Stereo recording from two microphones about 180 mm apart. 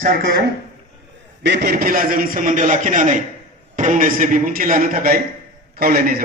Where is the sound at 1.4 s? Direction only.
65° right (ahead or behind).